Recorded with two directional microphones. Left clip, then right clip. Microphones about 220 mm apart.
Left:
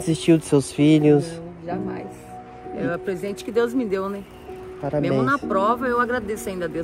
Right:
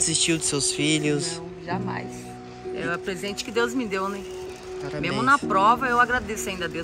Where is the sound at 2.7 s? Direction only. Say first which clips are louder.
Left 3 dB; 5° right (ahead or behind).